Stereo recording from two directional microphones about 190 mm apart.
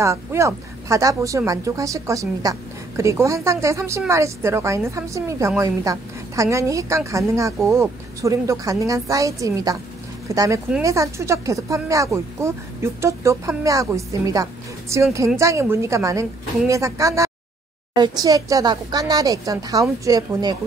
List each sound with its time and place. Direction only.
0.0 s speech: 15° right (ahead or behind)